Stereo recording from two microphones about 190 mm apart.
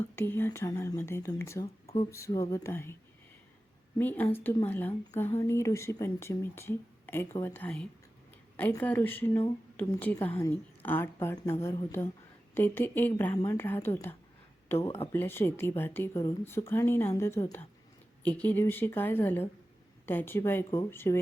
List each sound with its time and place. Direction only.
0.2 s speech: 10° left (ahead or behind)
1.6 s speech: 30° left (ahead or behind)
2.0 s speech: 15° left (ahead or behind)
3.9 s speech: 10° left (ahead or behind)
12.5 s speech: 10° left (ahead or behind)